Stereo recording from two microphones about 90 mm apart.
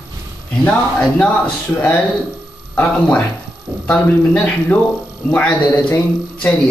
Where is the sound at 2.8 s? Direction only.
15° left (ahead or behind).